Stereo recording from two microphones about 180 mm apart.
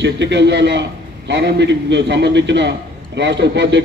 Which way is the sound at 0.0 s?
75° right (ahead or behind).